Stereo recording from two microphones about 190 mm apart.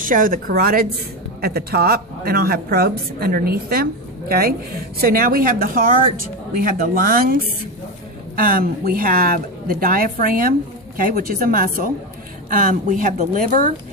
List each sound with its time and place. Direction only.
0.0 s a woman's voice: 45° right (ahead or behind)
8.4 s a woman's voice: 50° right (ahead or behind)